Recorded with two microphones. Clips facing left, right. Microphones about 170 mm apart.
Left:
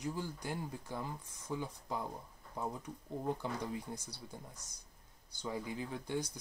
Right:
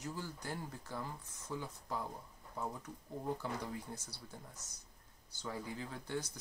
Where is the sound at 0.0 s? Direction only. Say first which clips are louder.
Left 4 dB; 15° left (ahead or behind).